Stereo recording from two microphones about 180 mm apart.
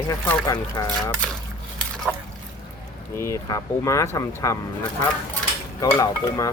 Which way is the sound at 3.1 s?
15° left (ahead or behind).